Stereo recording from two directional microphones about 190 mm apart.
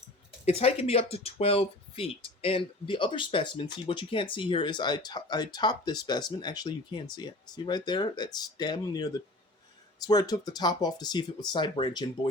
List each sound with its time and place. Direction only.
0.4 s speech: 30° left (ahead or behind)